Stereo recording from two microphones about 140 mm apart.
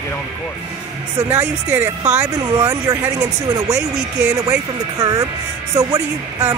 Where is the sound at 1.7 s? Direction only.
10° right (ahead or behind).